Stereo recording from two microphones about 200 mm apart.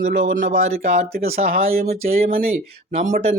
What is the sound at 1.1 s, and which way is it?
Speech, 50° right (ahead or behind).